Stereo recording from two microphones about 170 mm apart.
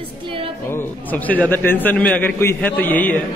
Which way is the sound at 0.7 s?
10° left (ahead or behind).